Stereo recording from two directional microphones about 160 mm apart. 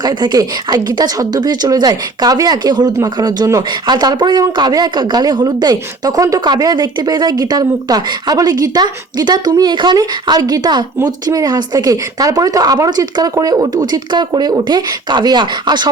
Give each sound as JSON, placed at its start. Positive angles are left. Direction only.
{"t": 0.0, "sound": "a woman's voice", "side_deg": -25}